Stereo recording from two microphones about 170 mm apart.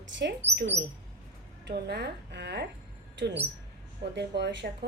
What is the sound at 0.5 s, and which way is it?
Speech, 90° right.